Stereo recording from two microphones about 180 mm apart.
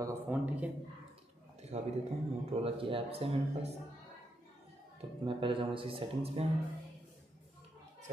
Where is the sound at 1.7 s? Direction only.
40° right (ahead or behind).